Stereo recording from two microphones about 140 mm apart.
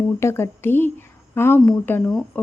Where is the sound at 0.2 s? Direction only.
20° left (ahead or behind).